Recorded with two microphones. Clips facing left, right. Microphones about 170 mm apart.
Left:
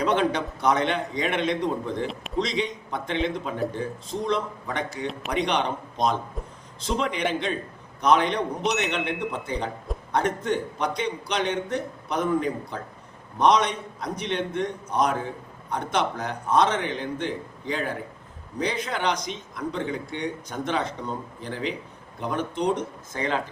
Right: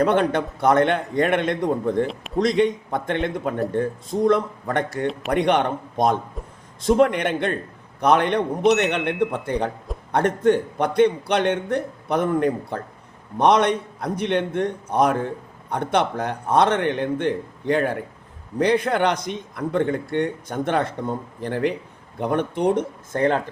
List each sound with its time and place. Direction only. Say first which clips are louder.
0.0 s a man's voice: right 4 dB; 55° right (ahead or behind)